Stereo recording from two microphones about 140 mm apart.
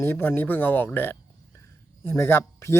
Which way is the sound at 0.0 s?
15° left (ahead or behind).